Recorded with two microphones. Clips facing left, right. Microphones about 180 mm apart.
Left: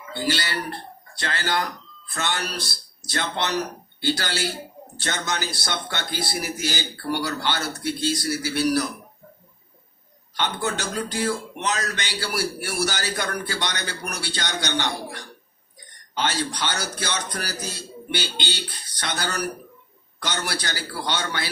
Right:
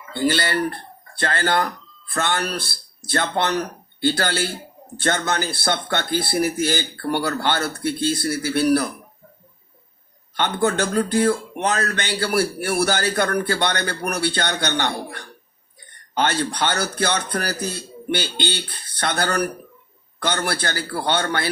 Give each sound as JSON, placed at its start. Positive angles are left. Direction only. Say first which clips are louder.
{"t": 0.1, "sound": "speech", "louder": "right 5 dB", "side_deg": -55}
{"t": 10.3, "sound": "speech", "louder": "right 6 dB", "side_deg": -55}